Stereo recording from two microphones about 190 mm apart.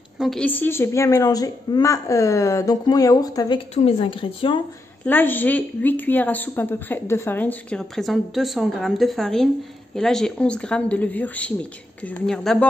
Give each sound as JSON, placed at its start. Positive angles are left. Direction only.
{"t": 0.2, "sound": "a woman's voice", "side_deg": 5}
{"t": 5.0, "sound": "a woman's voice", "side_deg": 10}